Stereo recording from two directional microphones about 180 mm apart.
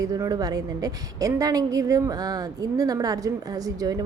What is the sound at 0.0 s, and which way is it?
A woman's voice, 20° right (ahead or behind).